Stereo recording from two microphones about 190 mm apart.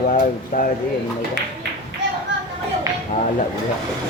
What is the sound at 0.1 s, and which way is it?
Speech, 40° left (ahead or behind).